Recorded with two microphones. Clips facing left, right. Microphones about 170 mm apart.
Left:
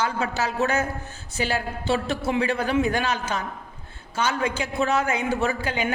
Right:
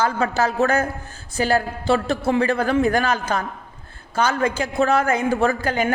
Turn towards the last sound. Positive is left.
turn(degrees=-45)  # may be behind; listen again after turning